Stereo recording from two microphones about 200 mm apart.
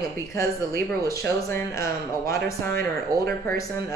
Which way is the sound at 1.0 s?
15° left (ahead or behind).